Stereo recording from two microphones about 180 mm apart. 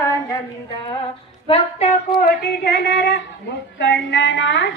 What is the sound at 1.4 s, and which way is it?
Speech, 30° left (ahead or behind).